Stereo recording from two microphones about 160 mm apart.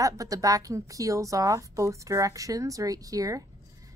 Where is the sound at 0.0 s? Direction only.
20° right (ahead or behind).